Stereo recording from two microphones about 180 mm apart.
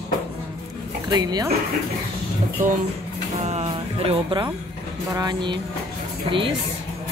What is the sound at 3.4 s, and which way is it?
Speech, 35° right (ahead or behind).